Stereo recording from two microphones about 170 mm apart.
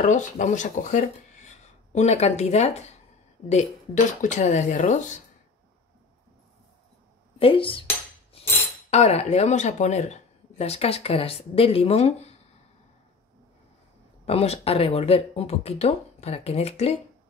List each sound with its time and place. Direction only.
0.0 s speech: 45° left (ahead or behind)
7.3 s speech: 30° left (ahead or behind)
8.9 s speech: 40° left (ahead or behind)
14.2 s speech: 35° left (ahead or behind)